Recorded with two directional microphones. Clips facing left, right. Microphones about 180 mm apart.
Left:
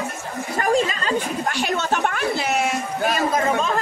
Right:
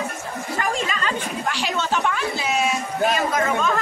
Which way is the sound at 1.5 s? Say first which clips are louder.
Left 1 dB; 50° left (ahead or behind).